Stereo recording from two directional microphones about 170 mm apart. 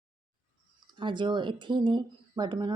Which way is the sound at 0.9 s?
30° right (ahead or behind).